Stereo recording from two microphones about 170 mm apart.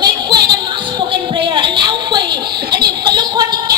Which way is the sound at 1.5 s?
30° right (ahead or behind).